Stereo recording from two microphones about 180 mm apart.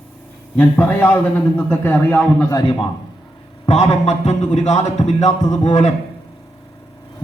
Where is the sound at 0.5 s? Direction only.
10° left (ahead or behind).